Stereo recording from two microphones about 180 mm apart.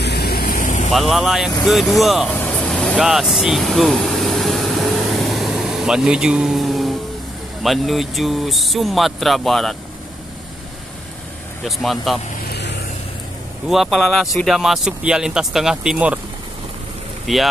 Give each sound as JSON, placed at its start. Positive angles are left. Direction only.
{"t": 0.0, "sound": "vehicle", "side_deg": 65}
{"t": 0.9, "sound": "speech", "side_deg": 0}
{"t": 2.3, "sound": "vehicle", "side_deg": 5}
{"t": 7.6, "sound": "speech", "side_deg": 0}
{"t": 11.6, "sound": "speech", "side_deg": 0}
{"t": 12.4, "sound": "vehicle", "side_deg": 70}
{"t": 13.7, "sound": "speech", "side_deg": 0}
{"t": 17.3, "sound": "speech", "side_deg": 0}